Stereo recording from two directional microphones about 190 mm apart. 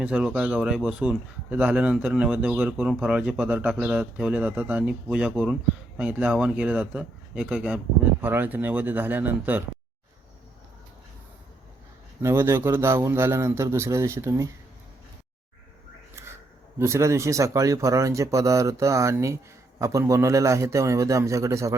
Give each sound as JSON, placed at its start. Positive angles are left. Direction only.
{"t": 0.0, "sound": "speech", "side_deg": -5}
{"t": 12.2, "sound": "speech", "side_deg": -15}
{"t": 16.2, "sound": "a sound", "side_deg": -15}
{"t": 16.7, "sound": "speech", "side_deg": -15}